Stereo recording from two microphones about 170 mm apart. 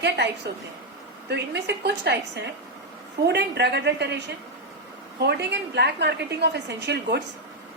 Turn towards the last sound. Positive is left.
turn(degrees=-80)